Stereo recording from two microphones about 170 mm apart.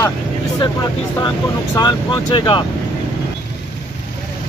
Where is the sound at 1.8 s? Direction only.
25° left (ahead or behind).